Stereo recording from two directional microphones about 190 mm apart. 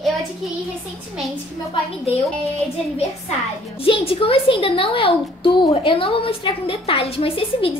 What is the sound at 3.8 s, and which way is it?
A woman's voice, 30° left (ahead or behind).